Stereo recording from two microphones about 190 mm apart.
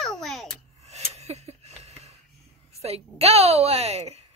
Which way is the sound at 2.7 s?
35° right (ahead or behind).